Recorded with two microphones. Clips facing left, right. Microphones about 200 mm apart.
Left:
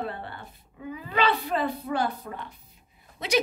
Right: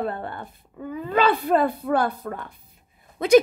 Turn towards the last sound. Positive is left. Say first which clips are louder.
# right 11 dB
turn(degrees=-50)  # may be behind; listen again after turning